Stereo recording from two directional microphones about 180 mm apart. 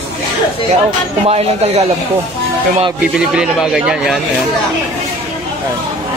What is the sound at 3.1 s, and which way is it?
A man's voice, 5° right (ahead or behind).